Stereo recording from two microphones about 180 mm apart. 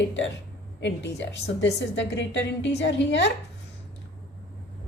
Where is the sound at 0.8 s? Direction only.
75° left (ahead or behind).